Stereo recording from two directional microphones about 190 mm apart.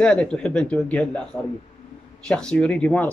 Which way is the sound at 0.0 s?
5° left (ahead or behind).